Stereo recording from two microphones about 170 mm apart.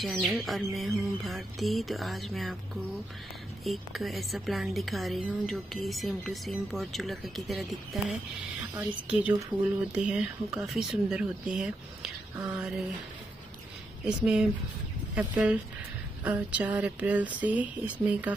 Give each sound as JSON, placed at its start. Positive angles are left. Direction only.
{"t": 0.0, "sound": "a woman's voice", "side_deg": 0}
{"t": 3.6, "sound": "a woman's voice", "side_deg": 0}
{"t": 12.4, "sound": "speech", "side_deg": -15}
{"t": 14.0, "sound": "a woman's voice", "side_deg": -5}